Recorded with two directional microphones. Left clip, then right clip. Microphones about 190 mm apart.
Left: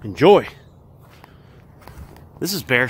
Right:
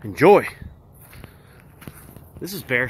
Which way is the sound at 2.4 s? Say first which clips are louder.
Left 4 dB; 30° left (ahead or behind).